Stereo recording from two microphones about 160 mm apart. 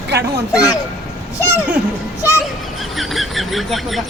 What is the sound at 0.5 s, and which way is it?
Speech, 20° left (ahead or behind).